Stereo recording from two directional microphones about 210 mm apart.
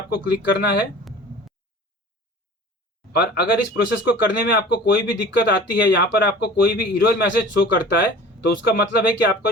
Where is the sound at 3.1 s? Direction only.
50° left (ahead or behind).